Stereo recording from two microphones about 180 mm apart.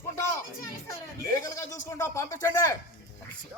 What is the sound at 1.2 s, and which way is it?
A man's voice, 20° left (ahead or behind).